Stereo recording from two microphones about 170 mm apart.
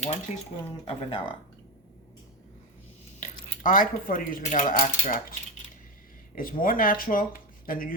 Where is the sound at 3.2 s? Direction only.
50° left (ahead or behind).